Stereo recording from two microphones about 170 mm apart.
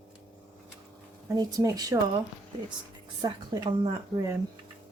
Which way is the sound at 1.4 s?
20° right (ahead or behind).